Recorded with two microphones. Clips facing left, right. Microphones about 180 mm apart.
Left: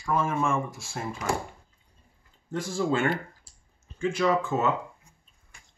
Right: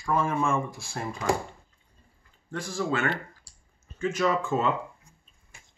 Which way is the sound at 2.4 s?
25° left (ahead or behind).